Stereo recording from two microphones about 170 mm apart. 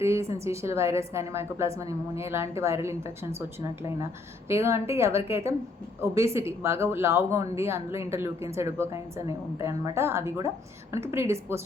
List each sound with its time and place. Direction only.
0.0 s a woman's voice: 15° right (ahead or behind)
4.4 s a woman's voice: 15° right (ahead or behind)